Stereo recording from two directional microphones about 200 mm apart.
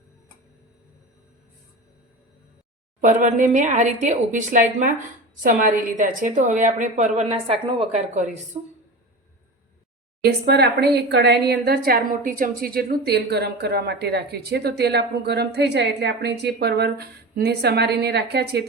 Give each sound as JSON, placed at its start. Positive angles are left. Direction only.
{"t": 3.0, "sound": "a woman's voice", "side_deg": -40}
{"t": 10.2, "sound": "a woman's voice", "side_deg": -55}